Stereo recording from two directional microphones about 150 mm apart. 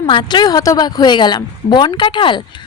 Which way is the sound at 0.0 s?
30° left (ahead or behind).